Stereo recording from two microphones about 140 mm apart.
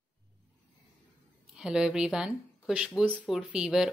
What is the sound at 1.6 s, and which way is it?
Speech, 5° right (ahead or behind).